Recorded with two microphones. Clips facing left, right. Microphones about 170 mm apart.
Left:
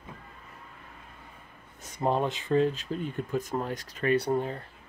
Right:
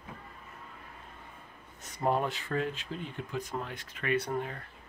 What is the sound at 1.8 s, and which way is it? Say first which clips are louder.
Speech: left 2 dB; 20° left (ahead or behind).